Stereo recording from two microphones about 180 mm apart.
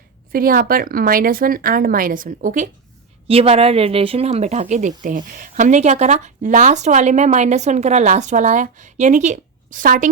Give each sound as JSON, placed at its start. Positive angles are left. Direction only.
{"t": 0.3, "sound": "speech", "side_deg": -55}
{"t": 3.2, "sound": "speech", "side_deg": -30}